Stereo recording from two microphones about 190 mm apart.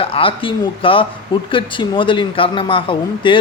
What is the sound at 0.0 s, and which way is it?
Speech, 30° left (ahead or behind).